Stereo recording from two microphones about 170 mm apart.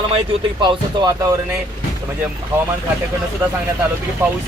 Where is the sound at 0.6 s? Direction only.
25° right (ahead or behind).